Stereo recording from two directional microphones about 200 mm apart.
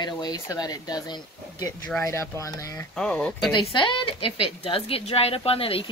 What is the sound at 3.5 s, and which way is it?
Speech, 25° left (ahead or behind).